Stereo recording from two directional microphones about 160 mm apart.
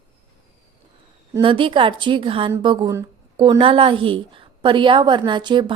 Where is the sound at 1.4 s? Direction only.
30° right (ahead or behind).